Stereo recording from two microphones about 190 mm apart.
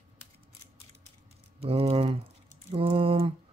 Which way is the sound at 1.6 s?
30° right (ahead or behind).